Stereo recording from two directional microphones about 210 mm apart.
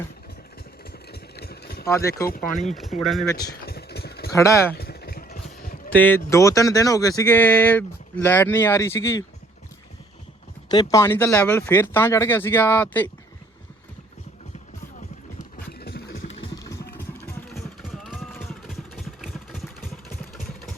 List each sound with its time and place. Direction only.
1.1 s engine: 50° left (ahead or behind)
1.8 s speech: 15° left (ahead or behind)
3.0 s speech: centre (ahead or behind)
3.3 s vehicle: 50° left (ahead or behind)
4.4 s speech: 15° left (ahead or behind)
4.7 s vehicle: 50° left (ahead or behind)
5.9 s speech: 10° left (ahead or behind)
10.7 s speech: 15° left (ahead or behind)
15.8 s music: 50° left (ahead or behind)
16.6 s a sound: 15° left (ahead or behind)
17.8 s vehicle: centre (ahead or behind)